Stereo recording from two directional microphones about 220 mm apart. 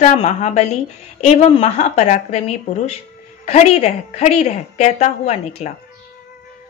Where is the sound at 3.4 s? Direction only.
30° left (ahead or behind).